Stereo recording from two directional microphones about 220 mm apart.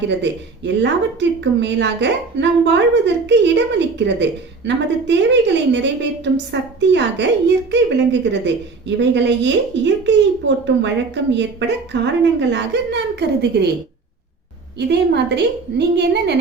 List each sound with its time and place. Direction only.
0.2 s a woman's voice: 55° right (ahead or behind)
14.8 s a woman's voice: 50° right (ahead or behind)